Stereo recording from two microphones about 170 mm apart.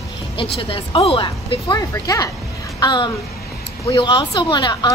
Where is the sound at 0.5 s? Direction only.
30° left (ahead or behind).